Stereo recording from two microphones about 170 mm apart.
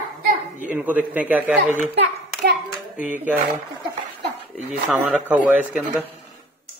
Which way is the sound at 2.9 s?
50° left (ahead or behind).